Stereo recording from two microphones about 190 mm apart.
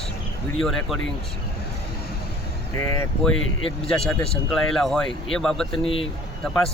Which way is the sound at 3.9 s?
5° left (ahead or behind).